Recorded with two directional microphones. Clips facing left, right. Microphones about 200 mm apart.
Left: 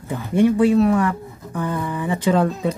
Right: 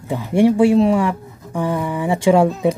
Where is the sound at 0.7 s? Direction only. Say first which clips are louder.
Right 2 dB; 15° right (ahead or behind).